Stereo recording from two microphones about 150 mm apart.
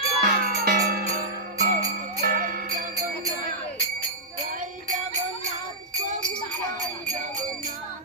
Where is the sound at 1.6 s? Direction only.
75° right (ahead or behind).